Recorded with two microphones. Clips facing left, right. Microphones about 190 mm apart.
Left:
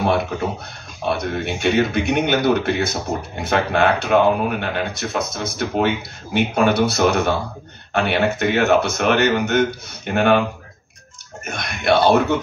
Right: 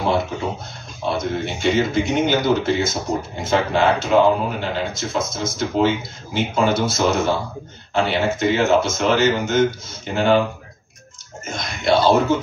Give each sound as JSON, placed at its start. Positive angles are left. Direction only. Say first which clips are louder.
{"t": 1.0, "sound": "speech", "louder": "even", "side_deg": 60}
{"t": 11.4, "sound": "speech", "louder": "left 2 dB", "side_deg": 60}